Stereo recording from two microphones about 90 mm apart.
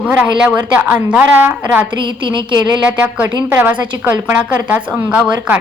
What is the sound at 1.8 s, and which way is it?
Speech, 65° right (ahead or behind).